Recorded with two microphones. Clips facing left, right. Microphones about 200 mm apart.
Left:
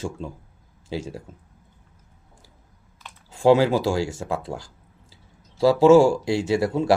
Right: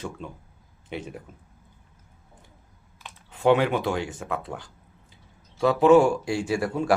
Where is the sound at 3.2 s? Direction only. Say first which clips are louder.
Left 4 dB; 30° left (ahead or behind).